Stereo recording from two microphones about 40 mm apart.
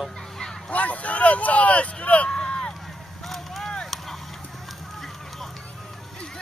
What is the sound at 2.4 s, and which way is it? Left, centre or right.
Run, left.